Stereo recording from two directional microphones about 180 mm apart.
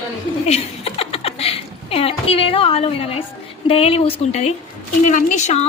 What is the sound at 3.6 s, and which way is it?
A woman's voice, 35° left (ahead or behind).